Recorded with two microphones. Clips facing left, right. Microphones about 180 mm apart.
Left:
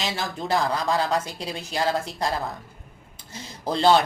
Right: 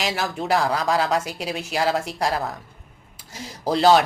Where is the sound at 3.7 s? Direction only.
10° right (ahead or behind).